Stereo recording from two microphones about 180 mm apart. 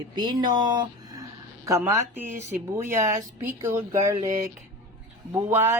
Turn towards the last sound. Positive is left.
turn(degrees=-10)  # may be behind; listen again after turning